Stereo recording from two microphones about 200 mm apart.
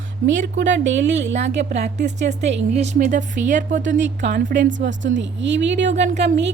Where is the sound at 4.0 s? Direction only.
65° right (ahead or behind).